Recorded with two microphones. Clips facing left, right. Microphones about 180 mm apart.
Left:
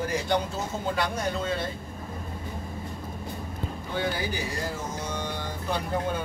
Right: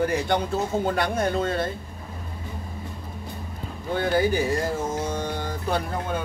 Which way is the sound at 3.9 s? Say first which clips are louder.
Right 8 dB; 50° right (ahead or behind).